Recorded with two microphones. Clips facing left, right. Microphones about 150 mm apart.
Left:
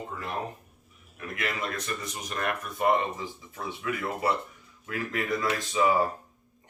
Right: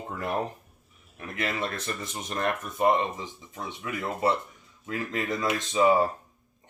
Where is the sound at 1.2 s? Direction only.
30° right (ahead or behind).